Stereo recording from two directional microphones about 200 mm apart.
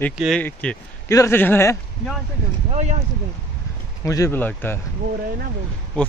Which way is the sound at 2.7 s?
35° right (ahead or behind).